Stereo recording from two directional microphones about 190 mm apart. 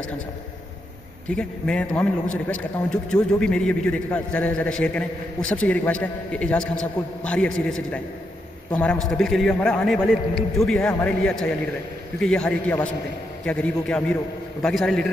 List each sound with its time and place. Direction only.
1.3 s a man's voice: 5° left (ahead or behind)